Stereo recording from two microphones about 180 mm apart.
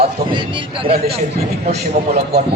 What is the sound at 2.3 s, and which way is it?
Speech, 65° right (ahead or behind).